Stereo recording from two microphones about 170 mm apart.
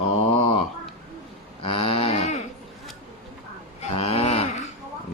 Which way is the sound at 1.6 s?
35° left (ahead or behind).